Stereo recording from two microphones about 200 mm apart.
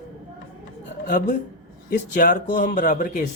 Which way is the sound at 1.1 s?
40° left (ahead or behind).